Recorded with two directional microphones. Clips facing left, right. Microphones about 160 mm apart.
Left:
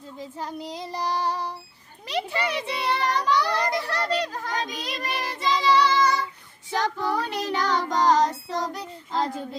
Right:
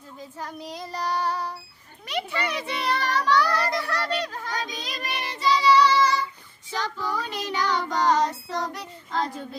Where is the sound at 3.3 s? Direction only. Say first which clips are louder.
Right 1 dB; 15° left (ahead or behind).